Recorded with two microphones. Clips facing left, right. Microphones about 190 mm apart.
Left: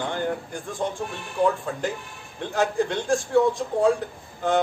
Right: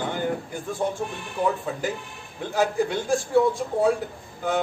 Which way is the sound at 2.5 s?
5° right (ahead or behind).